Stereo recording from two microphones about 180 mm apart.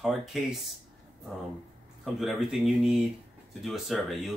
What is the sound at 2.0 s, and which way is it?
Speech, centre (ahead or behind).